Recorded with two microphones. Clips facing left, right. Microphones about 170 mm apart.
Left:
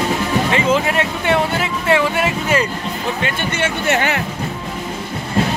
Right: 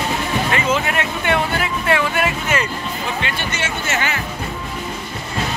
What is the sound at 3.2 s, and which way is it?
Music, 50° left (ahead or behind).